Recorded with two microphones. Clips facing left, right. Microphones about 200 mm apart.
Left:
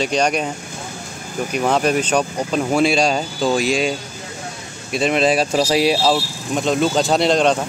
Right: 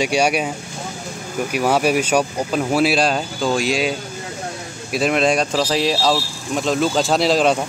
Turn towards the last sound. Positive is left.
turn(degrees=-5)  # may be behind; listen again after turning